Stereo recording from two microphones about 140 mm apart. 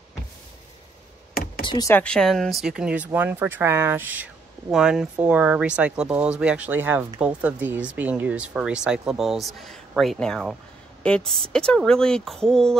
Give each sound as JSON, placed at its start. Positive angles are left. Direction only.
{"t": 1.3, "sound": "computer keyboard", "side_deg": 90}
{"t": 1.7, "sound": "speech", "side_deg": 25}
{"t": 2.0, "sound": "speech", "side_deg": 5}